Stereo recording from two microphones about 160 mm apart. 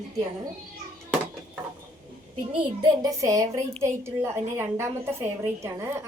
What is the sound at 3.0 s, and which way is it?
A woman's voice, 20° right (ahead or behind).